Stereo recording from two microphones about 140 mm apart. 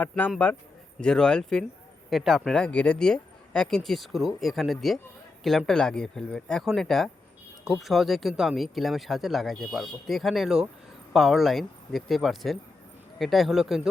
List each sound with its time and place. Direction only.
0.0 s speech: 10° left (ahead or behind)